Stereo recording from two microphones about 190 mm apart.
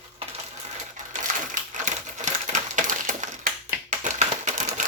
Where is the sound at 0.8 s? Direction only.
40° right (ahead or behind).